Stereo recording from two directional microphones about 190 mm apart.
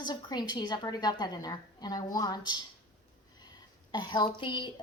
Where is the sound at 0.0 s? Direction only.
20° left (ahead or behind).